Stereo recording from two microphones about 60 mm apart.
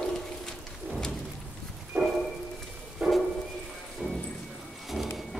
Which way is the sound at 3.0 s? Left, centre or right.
Centre.